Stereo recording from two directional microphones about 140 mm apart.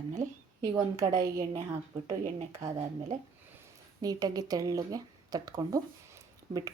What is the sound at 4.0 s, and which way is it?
Speech, 25° right (ahead or behind).